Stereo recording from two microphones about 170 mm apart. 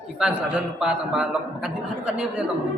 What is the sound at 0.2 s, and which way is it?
A man's voice, 10° right (ahead or behind).